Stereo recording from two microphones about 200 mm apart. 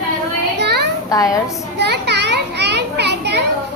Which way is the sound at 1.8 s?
55° right (ahead or behind).